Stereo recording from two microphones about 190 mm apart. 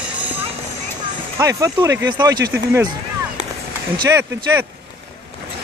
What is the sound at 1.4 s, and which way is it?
Speech, 15° right (ahead or behind).